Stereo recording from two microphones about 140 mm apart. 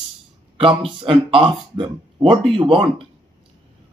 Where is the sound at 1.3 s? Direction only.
35° right (ahead or behind).